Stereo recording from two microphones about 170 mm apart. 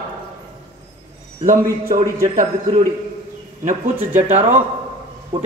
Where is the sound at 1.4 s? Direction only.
45° right (ahead or behind).